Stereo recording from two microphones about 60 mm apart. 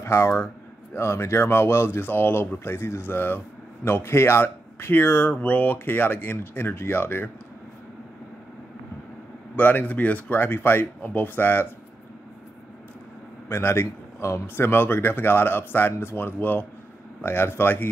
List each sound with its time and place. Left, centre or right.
0.0 s speech: left
9.6 s speech: left
13.5 s speech: left